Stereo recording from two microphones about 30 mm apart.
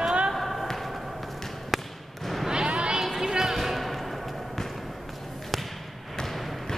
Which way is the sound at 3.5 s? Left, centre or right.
Centre.